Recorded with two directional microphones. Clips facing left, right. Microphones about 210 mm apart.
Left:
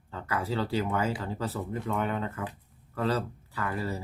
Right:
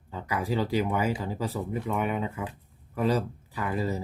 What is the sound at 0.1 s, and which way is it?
Speech, 15° right (ahead or behind).